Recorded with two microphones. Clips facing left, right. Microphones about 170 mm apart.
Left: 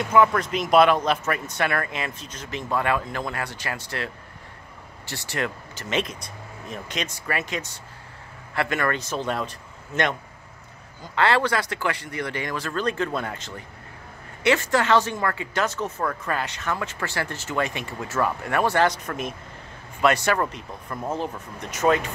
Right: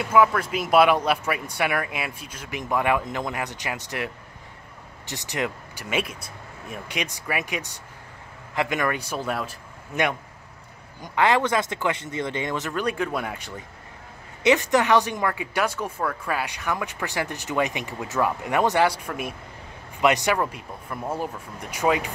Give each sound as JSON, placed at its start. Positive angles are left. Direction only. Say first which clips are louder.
{"t": 0.0, "sound": "speech", "louder": "even", "side_deg": -5}